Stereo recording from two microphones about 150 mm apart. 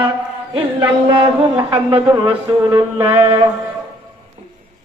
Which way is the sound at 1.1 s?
35° right (ahead or behind).